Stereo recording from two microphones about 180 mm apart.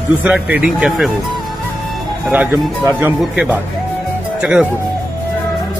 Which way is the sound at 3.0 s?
10° right (ahead or behind).